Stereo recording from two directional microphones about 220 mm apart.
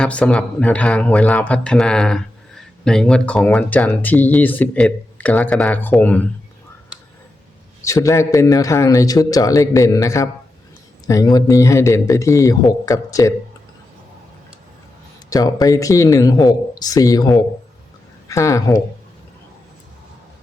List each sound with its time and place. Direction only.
0.0 s a man's voice: 5° left (ahead or behind)
7.9 s a man's voice: 15° left (ahead or behind)
15.3 s a man's voice: 15° left (ahead or behind)